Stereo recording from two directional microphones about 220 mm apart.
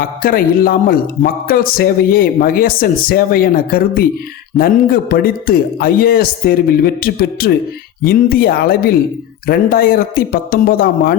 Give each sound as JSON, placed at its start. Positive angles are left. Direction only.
{"t": 0.0, "sound": "a man's voice", "side_deg": 40}